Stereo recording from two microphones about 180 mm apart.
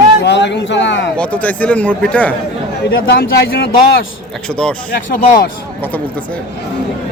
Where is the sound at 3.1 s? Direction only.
60° left (ahead or behind).